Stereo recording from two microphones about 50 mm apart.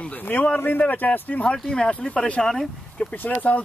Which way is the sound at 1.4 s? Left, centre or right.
Centre.